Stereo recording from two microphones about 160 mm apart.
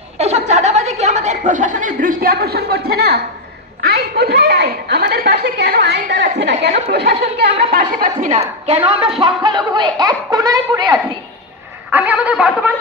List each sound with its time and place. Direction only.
0.2 s speech: 45° right (ahead or behind); by 3.2 s 75° right (ahead or behind)
3.8 s a woman's voice: 90° right; by 11.1 s 25° right (ahead or behind)
11.9 s a sound: 10° right (ahead or behind)